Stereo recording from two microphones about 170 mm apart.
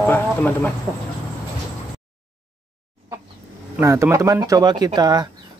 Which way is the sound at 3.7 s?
15° right (ahead or behind).